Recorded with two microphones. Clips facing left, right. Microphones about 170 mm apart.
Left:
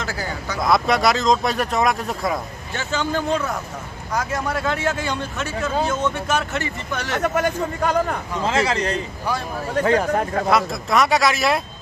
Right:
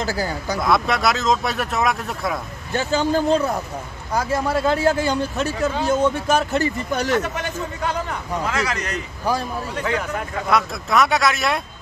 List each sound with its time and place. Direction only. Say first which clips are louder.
0.0 s speech: right 4 dB; 35° right (ahead or behind)
0.6 s speech: left 2 dB; centre (ahead or behind)
2.7 s speech: right 4 dB; 35° right (ahead or behind)
7.2 s a man's voice: left 4 dB; 50° left (ahead or behind)
8.5 s speech: left 7 dB; 25° left (ahead or behind)
9.8 s speech: left 8 dB; 40° left (ahead or behind)
10.5 s speech: right 1 dB; centre (ahead or behind)